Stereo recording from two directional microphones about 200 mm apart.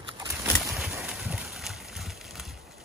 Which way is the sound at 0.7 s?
Centre (ahead or behind).